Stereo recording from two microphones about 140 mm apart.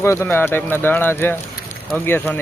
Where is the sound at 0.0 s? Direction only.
20° left (ahead or behind).